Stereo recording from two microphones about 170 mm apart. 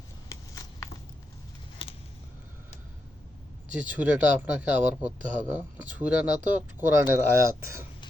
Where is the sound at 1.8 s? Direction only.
30° left (ahead or behind).